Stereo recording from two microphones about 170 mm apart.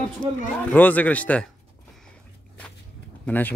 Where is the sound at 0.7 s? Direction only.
10° left (ahead or behind).